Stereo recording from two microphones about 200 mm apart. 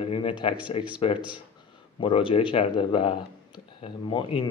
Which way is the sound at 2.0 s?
25° left (ahead or behind).